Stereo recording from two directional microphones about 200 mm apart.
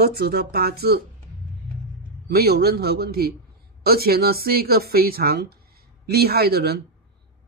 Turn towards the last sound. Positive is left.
turn(degrees=-50)  # may be behind; listen again after turning